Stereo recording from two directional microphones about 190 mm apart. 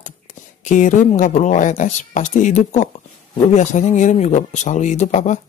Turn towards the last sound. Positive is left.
turn(degrees=40)  # may be behind; listen again after turning